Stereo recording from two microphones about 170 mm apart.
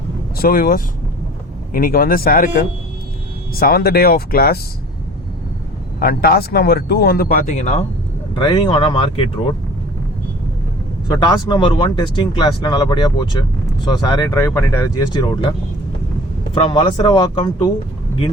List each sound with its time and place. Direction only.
0.3 s speech: 60° left (ahead or behind)
6.0 s speech: 65° left (ahead or behind); by 7.9 s 40° left (ahead or behind)
8.3 s speech: 30° left (ahead or behind)
11.1 s speech: 25° left (ahead or behind)
16.6 s speech: 30° left (ahead or behind)